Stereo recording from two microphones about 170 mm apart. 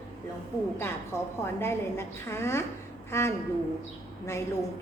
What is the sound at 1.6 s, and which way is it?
A woman's voice, 15° left (ahead or behind).